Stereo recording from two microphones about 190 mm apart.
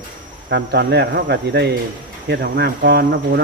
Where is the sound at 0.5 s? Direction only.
60° right (ahead or behind).